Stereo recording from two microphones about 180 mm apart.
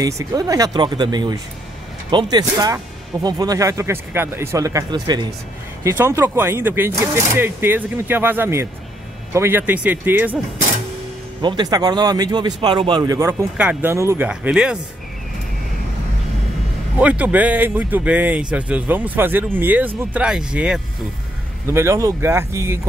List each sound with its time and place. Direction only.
0.0 s speech: 20° right (ahead or behind)
11.4 s speech: 25° right (ahead or behind); by 14.8 s 5° right (ahead or behind)
17.0 s speech: 10° right (ahead or behind)
21.6 s speech: 15° right (ahead or behind)